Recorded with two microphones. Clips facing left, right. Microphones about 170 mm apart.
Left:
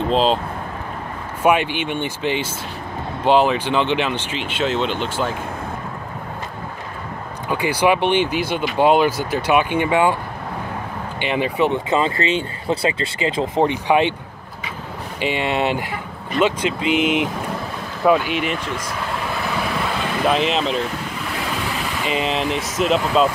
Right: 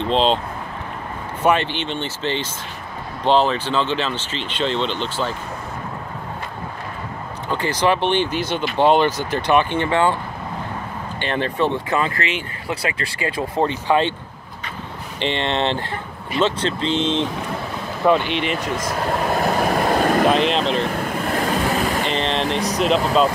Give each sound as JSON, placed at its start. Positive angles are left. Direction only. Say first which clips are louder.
{"t": 0.0, "sound": "speech", "louder": "left 1 dB", "side_deg": 5}
{"t": 1.4, "sound": "speech", "louder": "left 1 dB", "side_deg": 10}
{"t": 7.4, "sound": "speech", "louder": "left 2 dB", "side_deg": 10}
{"t": 11.1, "sound": "speech", "louder": "left 2 dB", "side_deg": 10}
{"t": 15.1, "sound": "speech", "louder": "left 1 dB", "side_deg": 10}
{"t": 18.6, "sound": "vehicle", "louder": "right 3 dB", "side_deg": -45}
{"t": 20.2, "sound": "speech", "louder": "right 1 dB", "side_deg": 0}
{"t": 21.0, "sound": "vehicle", "louder": "right 5 dB", "side_deg": -50}
{"t": 22.0, "sound": "speech", "louder": "even", "side_deg": 5}